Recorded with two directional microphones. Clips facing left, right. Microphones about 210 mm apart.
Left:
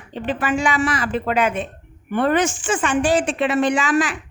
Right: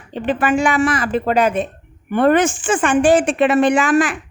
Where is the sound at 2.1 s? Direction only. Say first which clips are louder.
Right 4 dB; 55° right (ahead or behind).